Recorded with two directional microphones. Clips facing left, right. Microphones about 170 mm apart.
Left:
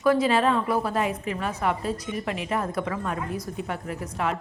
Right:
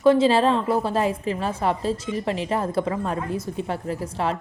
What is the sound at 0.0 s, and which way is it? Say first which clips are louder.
A woman's voice: right 4 dB; 25° right (ahead or behind).